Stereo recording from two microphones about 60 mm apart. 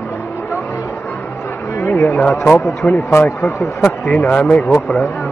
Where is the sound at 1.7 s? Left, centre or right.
Left.